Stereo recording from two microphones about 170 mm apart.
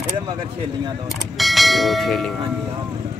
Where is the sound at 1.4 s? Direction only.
Centre (ahead or behind).